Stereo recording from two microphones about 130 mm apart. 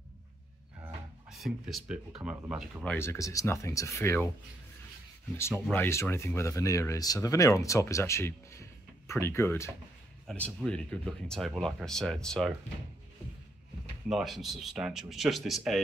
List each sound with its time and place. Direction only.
1.3 s speech: centre (ahead or behind)
3.0 s speech: 20° left (ahead or behind)
5.7 s speech: 20° left (ahead or behind)
10.2 s speech: 5° left (ahead or behind)
14.0 s speech: centre (ahead or behind)